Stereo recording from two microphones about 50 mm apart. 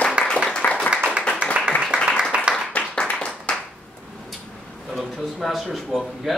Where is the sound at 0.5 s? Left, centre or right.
Left.